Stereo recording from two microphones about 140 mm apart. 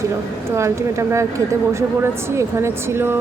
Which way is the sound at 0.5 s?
20° right (ahead or behind).